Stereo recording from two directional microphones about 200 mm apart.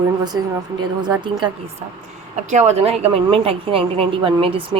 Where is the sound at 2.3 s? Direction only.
35° right (ahead or behind).